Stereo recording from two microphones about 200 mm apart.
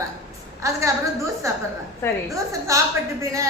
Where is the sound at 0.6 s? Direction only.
15° right (ahead or behind).